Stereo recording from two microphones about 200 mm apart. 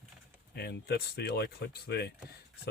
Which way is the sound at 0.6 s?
55° left (ahead or behind).